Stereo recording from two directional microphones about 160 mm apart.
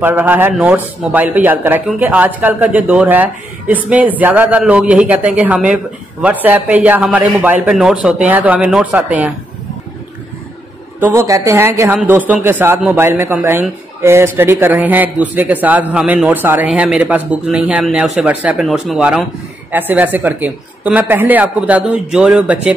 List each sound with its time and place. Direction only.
0.0 s a man's voice: 15° right (ahead or behind)
11.0 s a man's voice: 15° right (ahead or behind)